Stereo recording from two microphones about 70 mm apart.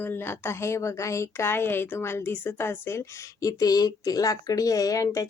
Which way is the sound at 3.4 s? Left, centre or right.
Left.